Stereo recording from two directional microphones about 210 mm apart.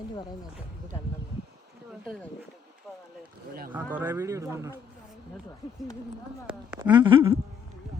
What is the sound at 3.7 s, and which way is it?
Speech, 10° right (ahead or behind).